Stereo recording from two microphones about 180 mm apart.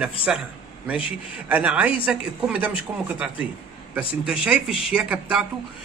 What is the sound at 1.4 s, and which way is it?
Speech, 10° right (ahead or behind).